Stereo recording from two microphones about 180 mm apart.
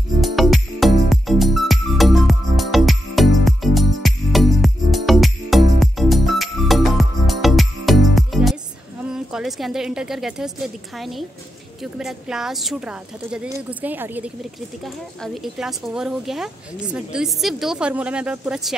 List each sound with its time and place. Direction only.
0.2 s music: centre (ahead or behind)
9.1 s a woman's voice: 5° right (ahead or behind)